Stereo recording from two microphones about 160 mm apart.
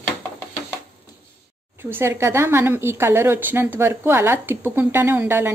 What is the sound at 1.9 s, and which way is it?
A woman's voice, 15° right (ahead or behind).